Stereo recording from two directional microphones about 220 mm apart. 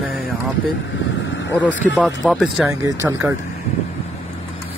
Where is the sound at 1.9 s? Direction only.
Centre (ahead or behind).